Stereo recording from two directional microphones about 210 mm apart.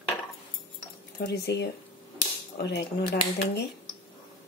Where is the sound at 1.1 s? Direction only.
50° left (ahead or behind).